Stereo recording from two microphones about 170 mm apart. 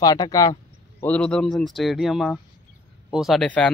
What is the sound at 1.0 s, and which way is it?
Speech, 5° left (ahead or behind).